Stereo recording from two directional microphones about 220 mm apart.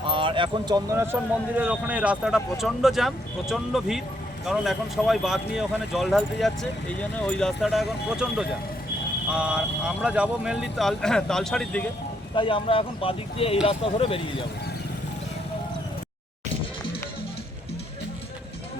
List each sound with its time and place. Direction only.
0.0 s speech: 25° right (ahead or behind); by 11.9 s 5° left (ahead or behind)
12.3 s speech: 25° left (ahead or behind)